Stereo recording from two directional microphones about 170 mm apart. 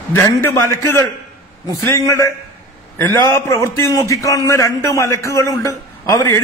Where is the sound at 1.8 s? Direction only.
15° left (ahead or behind).